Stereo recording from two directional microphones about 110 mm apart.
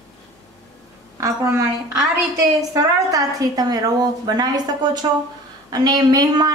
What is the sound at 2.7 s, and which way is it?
A woman's voice, 35° right (ahead or behind).